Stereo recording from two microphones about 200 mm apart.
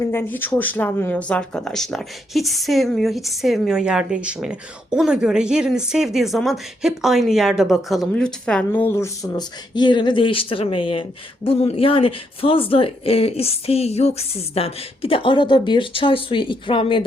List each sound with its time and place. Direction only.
0.1 s speech: 10° left (ahead or behind); by 17.1 s 25° left (ahead or behind)